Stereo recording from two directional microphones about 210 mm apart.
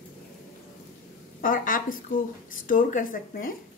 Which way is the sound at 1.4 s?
40° left (ahead or behind).